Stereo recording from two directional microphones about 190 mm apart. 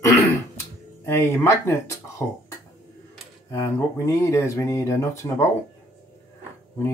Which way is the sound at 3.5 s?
15° left (ahead or behind).